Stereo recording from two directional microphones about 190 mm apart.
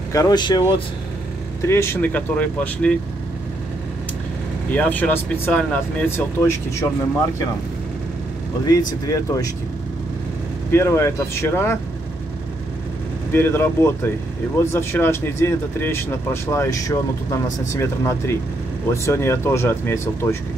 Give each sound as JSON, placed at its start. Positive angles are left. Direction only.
{"t": 0.1, "sound": "speech", "side_deg": 20}
{"t": 1.7, "sound": "speech", "side_deg": 15}
{"t": 4.7, "sound": "speech", "side_deg": 10}
{"t": 8.6, "sound": "speech", "side_deg": 20}
{"t": 10.7, "sound": "speech", "side_deg": 15}
{"t": 13.3, "sound": "speech", "side_deg": 10}